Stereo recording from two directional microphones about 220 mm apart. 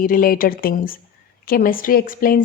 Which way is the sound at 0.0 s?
40° left (ahead or behind).